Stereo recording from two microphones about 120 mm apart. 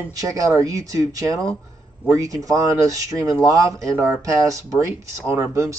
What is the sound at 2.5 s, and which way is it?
Chopping, 30° right (ahead or behind).